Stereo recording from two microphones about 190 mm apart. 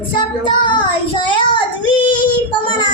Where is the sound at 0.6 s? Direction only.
25° left (ahead or behind).